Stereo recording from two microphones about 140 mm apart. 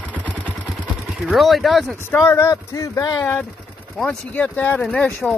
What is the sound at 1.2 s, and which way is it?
Speech, centre (ahead or behind).